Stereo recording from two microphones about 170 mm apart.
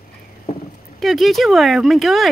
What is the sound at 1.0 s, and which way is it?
Speech, centre (ahead or behind).